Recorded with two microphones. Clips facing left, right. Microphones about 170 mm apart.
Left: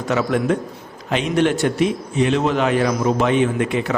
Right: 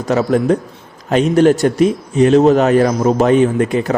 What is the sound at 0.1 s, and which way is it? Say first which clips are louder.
Speech: right 5 dB; 35° right (ahead or behind).